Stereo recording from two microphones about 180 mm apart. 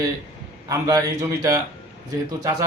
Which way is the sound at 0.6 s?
20° right (ahead or behind).